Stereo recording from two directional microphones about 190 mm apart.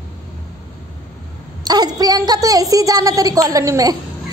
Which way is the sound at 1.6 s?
20° right (ahead or behind).